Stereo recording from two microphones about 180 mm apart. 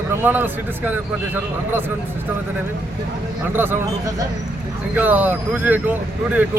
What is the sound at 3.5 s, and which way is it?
Speech, 10° right (ahead or behind).